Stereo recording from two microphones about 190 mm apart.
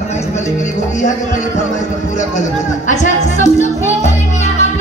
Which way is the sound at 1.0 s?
40° left (ahead or behind).